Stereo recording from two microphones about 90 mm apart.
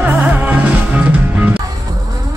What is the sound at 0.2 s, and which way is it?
Music, 20° right (ahead or behind).